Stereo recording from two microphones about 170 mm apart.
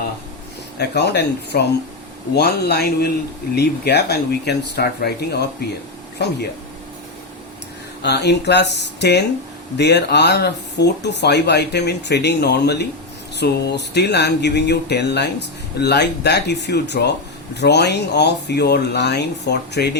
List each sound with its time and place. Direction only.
0.8 s speech: 80° left
8.0 s speech: 80° left